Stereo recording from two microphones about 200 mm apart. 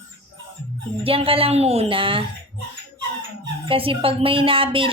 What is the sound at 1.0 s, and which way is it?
A woman's voice, 30° right (ahead or behind).